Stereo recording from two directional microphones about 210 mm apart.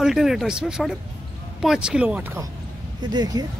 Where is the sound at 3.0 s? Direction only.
20° right (ahead or behind).